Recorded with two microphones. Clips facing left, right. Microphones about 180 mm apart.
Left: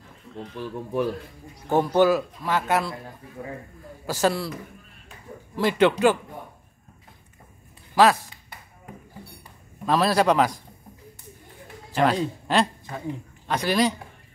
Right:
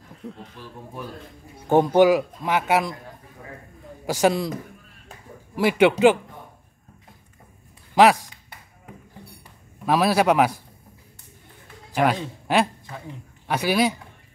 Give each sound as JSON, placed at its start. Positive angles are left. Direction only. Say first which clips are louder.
{"t": 0.2, "sound": "a sound", "louder": "right 6 dB", "side_deg": -65}
{"t": 0.6, "sound": "speech", "louder": "left 10 dB", "side_deg": 75}
{"t": 1.7, "sound": "a man's voice", "louder": "right 3 dB", "side_deg": -20}
{"t": 4.0, "sound": "a man's voice", "louder": "right 3 dB", "side_deg": -15}
{"t": 5.6, "sound": "a man's voice", "louder": "right 3 dB", "side_deg": -10}
{"t": 7.9, "sound": "speech", "louder": "right 2 dB", "side_deg": -20}
{"t": 9.8, "sound": "a man's voice", "louder": "right 1 dB", "side_deg": -10}
{"t": 11.9, "sound": "a man's voice", "louder": "even", "side_deg": -10}